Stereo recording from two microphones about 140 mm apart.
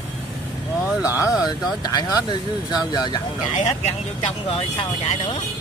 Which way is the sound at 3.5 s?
60° left (ahead or behind).